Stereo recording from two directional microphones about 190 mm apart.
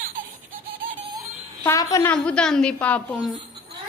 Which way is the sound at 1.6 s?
15° left (ahead or behind).